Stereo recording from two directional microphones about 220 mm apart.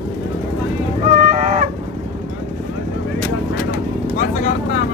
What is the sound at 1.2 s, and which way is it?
Fowl, 35° right (ahead or behind).